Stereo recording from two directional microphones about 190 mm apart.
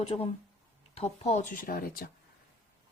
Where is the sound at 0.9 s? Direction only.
35° left (ahead or behind); by 2.1 s 50° left (ahead or behind).